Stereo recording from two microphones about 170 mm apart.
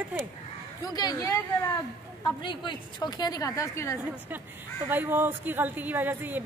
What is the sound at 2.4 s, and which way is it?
A woman's voice, 25° left (ahead or behind).